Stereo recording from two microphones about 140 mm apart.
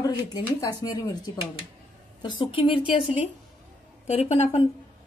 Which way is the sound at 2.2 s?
35° left (ahead or behind).